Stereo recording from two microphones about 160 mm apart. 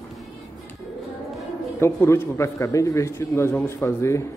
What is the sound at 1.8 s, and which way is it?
A man's voice, 15° left (ahead or behind).